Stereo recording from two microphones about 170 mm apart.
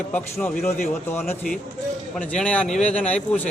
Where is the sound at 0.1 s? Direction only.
10° left (ahead or behind).